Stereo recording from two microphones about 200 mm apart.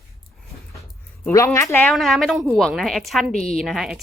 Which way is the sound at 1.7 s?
5° left (ahead or behind).